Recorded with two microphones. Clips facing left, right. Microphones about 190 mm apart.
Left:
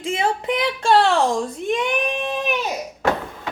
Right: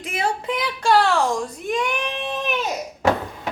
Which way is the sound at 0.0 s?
25° left (ahead or behind).